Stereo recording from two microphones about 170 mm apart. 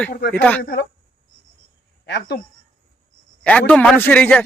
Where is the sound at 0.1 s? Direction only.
75° left (ahead or behind).